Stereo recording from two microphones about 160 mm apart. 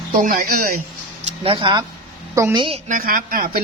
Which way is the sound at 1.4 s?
35° right (ahead or behind).